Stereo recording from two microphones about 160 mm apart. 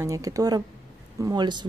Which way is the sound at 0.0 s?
20° right (ahead or behind).